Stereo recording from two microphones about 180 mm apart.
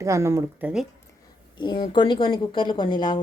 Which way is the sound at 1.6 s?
25° left (ahead or behind).